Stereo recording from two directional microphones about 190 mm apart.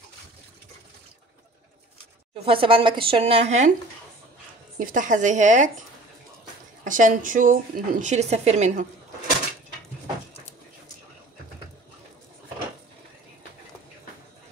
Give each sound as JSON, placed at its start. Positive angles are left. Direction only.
{"t": 2.3, "sound": "speech", "side_deg": -30}
{"t": 4.7, "sound": "a woman's voice", "side_deg": -45}